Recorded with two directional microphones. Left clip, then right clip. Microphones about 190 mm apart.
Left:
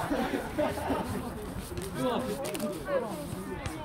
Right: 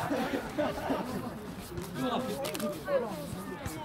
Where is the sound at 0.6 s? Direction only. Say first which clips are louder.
Left 2 dB; 55° right (ahead or behind).